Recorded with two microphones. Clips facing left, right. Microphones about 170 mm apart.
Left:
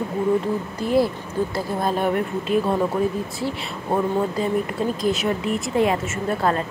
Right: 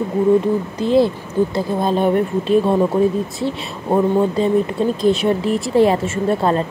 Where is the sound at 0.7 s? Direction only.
25° right (ahead or behind).